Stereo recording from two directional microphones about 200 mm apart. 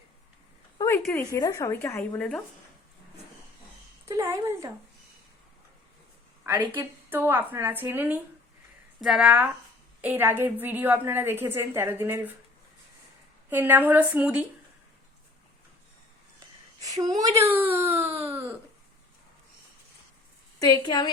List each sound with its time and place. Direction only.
1.1 s a woman's voice: 15° left (ahead or behind)
4.0 s speech: 15° right (ahead or behind)
6.4 s a woman's voice: 10° right (ahead or behind)
13.5 s a woman's voice: 10° right (ahead or behind)
16.8 s a woman's voice: 20° right (ahead or behind)
18.0 s baby cry: 30° right (ahead or behind)
20.6 s a woman's voice: 20° left (ahead or behind)